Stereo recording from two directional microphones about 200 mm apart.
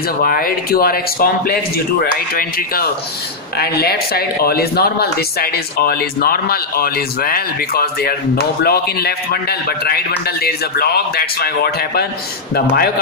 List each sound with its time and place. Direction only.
0.2 s speech: 45° left (ahead or behind)